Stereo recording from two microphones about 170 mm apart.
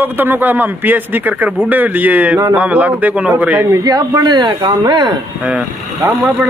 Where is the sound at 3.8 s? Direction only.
20° right (ahead or behind).